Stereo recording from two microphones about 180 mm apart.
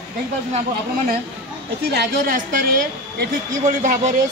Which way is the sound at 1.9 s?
55° right (ahead or behind).